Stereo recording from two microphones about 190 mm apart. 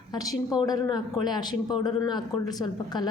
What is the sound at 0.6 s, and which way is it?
A man's voice, 20° left (ahead or behind).